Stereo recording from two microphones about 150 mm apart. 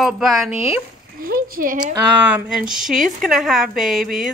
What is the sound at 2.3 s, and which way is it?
A woman's voice, 5° right (ahead or behind).